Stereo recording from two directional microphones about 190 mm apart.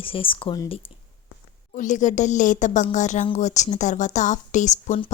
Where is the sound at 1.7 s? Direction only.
40° left (ahead or behind).